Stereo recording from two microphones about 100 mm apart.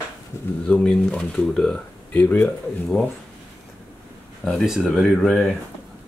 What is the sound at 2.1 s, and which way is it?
Speech, 20° left (ahead or behind).